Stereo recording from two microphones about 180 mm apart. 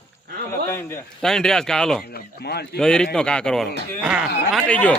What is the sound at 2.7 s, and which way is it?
A man's voice, 5° left (ahead or behind).